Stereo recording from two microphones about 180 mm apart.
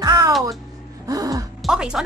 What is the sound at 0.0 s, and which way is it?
Music, 20° right (ahead or behind).